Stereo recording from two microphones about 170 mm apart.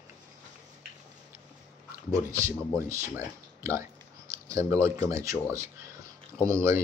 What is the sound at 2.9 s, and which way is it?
Speech, 15° right (ahead or behind).